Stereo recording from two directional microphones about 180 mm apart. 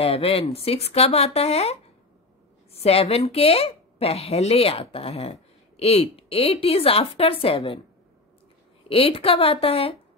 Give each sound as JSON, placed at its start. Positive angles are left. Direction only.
{"t": 0.0, "sound": "a woman's voice", "side_deg": 30}
{"t": 8.8, "sound": "a woman's voice", "side_deg": 30}